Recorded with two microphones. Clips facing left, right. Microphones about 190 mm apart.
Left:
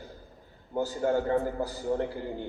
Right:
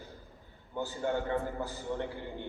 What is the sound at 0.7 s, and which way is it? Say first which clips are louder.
A man's voice: left 6 dB; 40° left (ahead or behind).